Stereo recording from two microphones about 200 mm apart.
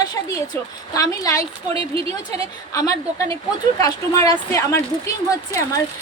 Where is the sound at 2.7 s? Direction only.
15° left (ahead or behind).